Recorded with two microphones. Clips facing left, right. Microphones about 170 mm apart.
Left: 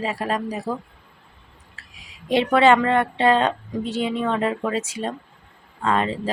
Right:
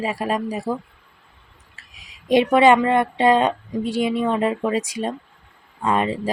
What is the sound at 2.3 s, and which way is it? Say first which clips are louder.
Speech: right 2 dB; 15° right (ahead or behind).